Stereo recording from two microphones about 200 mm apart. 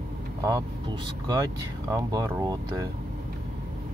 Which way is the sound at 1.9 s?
15° right (ahead or behind).